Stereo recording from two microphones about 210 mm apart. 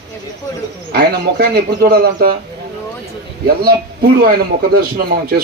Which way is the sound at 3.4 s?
45° right (ahead or behind).